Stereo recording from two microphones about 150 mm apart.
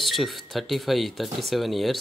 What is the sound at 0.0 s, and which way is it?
Speech, centre (ahead or behind).